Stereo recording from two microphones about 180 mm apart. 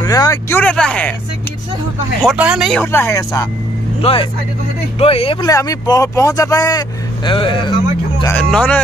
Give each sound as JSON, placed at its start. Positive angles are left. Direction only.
{"t": 0.0, "sound": "speech", "side_deg": 20}
{"t": 2.2, "sound": "speech", "side_deg": -5}
{"t": 2.8, "sound": "speech", "side_deg": 15}
{"t": 4.0, "sound": "speech", "side_deg": 30}
{"t": 8.3, "sound": "speech", "side_deg": 5}